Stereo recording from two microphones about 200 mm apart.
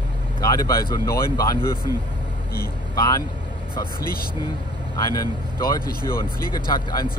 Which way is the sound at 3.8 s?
45° left (ahead or behind).